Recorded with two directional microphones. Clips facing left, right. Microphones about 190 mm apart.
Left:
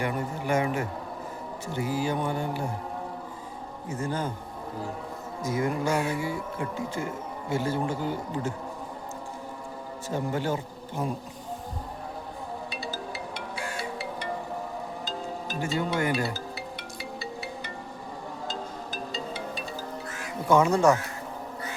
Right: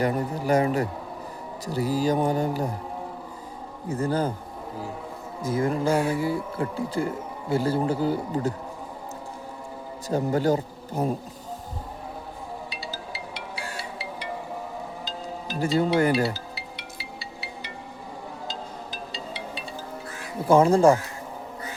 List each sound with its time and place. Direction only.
0.0 s speech: 35° right (ahead or behind)
3.8 s speech: 35° right (ahead or behind)
5.4 s speech: 30° right (ahead or behind)
10.1 s speech: 40° right (ahead or behind)
15.5 s speech: 35° right (ahead or behind)
19.1 s music: 45° left (ahead or behind)
20.5 s speech: 30° right (ahead or behind)